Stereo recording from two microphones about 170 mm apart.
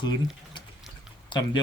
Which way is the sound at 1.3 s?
25° left (ahead or behind).